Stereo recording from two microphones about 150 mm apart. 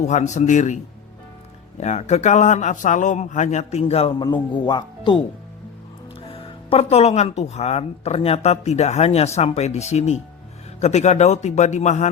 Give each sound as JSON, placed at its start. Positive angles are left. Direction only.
{"t": 0.1, "sound": "speech", "side_deg": 50}
{"t": 1.8, "sound": "speech", "side_deg": 50}
{"t": 4.2, "sound": "speech", "side_deg": 30}
{"t": 6.2, "sound": "speech", "side_deg": 40}